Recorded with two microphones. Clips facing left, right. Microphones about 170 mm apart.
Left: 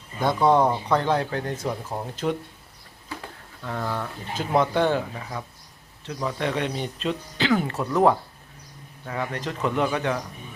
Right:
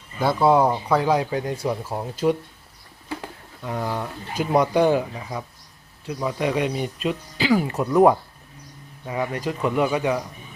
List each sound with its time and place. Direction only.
0.2 s speech: 5° right (ahead or behind)
3.6 s speech: 15° right (ahead or behind)